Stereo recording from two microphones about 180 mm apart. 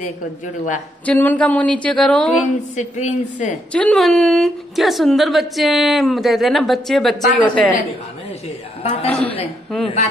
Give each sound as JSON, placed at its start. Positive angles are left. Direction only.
{"t": 1.0, "sound": "speech", "side_deg": 10}
{"t": 2.7, "sound": "a woman's voice", "side_deg": 45}
{"t": 3.7, "sound": "a woman's voice", "side_deg": 5}
{"t": 8.8, "sound": "a woman's voice", "side_deg": 35}